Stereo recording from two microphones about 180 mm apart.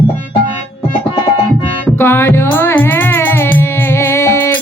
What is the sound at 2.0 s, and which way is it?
Music, 15° left (ahead or behind).